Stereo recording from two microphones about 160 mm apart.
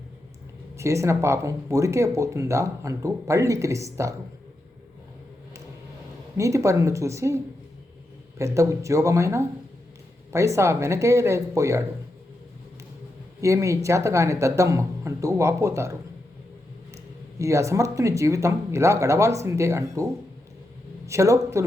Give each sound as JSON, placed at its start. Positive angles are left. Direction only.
{"t": 0.8, "sound": "speech", "side_deg": -20}
{"t": 6.3, "sound": "speech", "side_deg": -20}
{"t": 8.4, "sound": "speech", "side_deg": -20}
{"t": 13.4, "sound": "speech", "side_deg": -20}
{"t": 21.1, "sound": "speech", "side_deg": -20}